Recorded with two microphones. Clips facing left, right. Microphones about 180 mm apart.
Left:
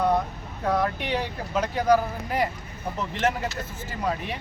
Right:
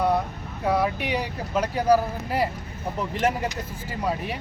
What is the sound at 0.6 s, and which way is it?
Speech, 5° right (ahead or behind).